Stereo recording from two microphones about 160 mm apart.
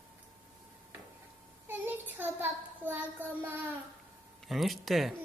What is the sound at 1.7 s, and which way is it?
Child singing, 10° right (ahead or behind).